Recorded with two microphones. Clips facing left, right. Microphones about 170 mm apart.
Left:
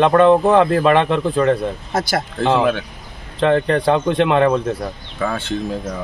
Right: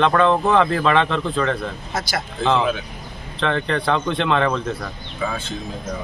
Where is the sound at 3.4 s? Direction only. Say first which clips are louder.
Left 6 dB; 45° left (ahead or behind).